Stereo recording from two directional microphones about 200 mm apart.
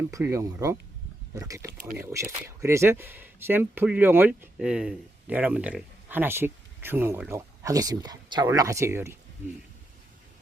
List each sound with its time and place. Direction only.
0.1 s speech: 15° right (ahead or behind)